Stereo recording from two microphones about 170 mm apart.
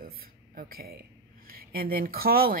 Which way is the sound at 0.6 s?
60° right (ahead or behind).